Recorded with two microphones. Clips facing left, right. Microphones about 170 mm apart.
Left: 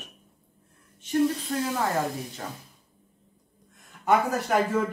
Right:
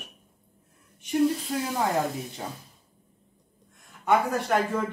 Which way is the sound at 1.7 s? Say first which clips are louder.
Right 2 dB; 15° right (ahead or behind).